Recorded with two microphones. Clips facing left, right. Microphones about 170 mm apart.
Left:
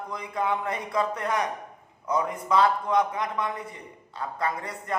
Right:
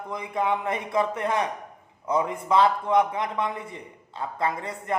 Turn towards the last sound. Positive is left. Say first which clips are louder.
# right 2 dB
turn(degrees=-25)  # may be behind; listen again after turning